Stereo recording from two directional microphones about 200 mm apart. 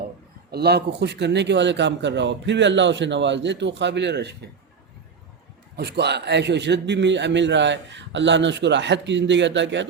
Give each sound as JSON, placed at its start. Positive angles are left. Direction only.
{"t": 0.5, "sound": "a man's voice", "side_deg": -55}
{"t": 5.7, "sound": "a man's voice", "side_deg": -55}